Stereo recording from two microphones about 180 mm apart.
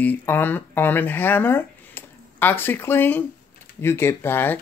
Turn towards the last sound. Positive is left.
turn(degrees=10)  # may be behind; listen again after turning